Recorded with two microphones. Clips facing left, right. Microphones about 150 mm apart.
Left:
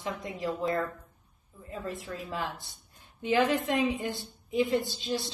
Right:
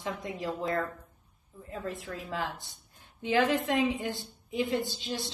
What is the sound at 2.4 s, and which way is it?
Speech, 15° right (ahead or behind).